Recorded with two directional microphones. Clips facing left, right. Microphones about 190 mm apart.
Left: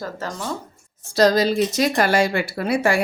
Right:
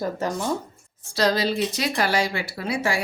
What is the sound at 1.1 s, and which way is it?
Speech, 45° left (ahead or behind).